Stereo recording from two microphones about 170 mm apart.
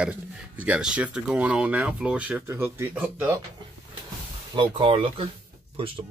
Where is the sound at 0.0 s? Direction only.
5° right (ahead or behind).